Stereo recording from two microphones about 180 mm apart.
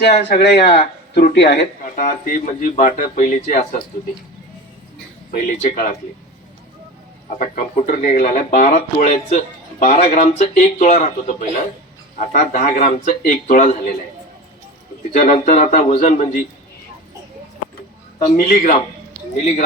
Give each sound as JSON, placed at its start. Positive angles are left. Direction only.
{"t": 0.0, "sound": "speech", "side_deg": 70}
{"t": 2.0, "sound": "speech", "side_deg": 45}
{"t": 5.3, "sound": "speech", "side_deg": 50}
{"t": 7.3, "sound": "speech", "side_deg": 45}
{"t": 15.1, "sound": "speech", "side_deg": 45}
{"t": 18.3, "sound": "speech", "side_deg": 50}